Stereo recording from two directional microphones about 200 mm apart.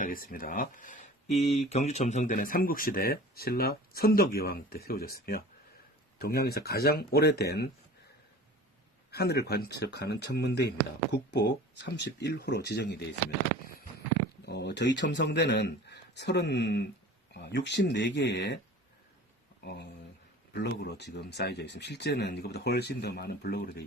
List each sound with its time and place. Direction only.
0.0 s speech: 45° left (ahead or behind)
9.0 s speech: 55° left (ahead or behind)
14.4 s speech: 55° left (ahead or behind)
20.5 s speech: 55° left (ahead or behind)